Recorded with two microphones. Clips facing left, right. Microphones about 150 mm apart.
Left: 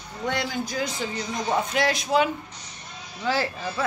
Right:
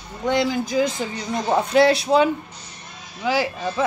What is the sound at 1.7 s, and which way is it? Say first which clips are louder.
Speech: right 8 dB; 30° right (ahead or behind).